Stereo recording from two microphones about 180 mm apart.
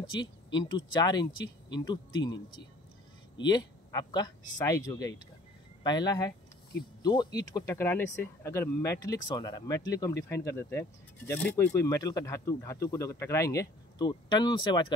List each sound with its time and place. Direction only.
0.1 s speech: 25° left (ahead or behind)